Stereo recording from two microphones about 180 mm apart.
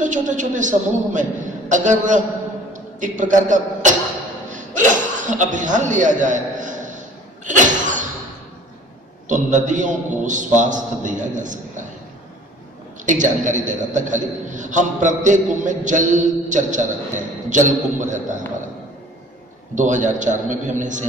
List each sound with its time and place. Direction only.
0.0 s a man's voice: 45° right (ahead or behind)
4.5 s a sound: 45° right (ahead or behind)
5.2 s a man's voice: 45° right (ahead or behind)
7.4 s a sound: 45° right (ahead or behind)
9.3 s a man's voice: 45° right (ahead or behind)
13.0 s a man's voice: 45° right (ahead or behind)
19.7 s a man's voice: 45° right (ahead or behind)